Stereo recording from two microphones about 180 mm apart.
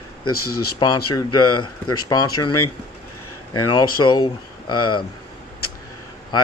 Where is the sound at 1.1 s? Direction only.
20° left (ahead or behind).